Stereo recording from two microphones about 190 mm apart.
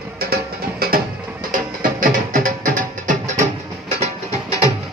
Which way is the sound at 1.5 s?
45° right (ahead or behind).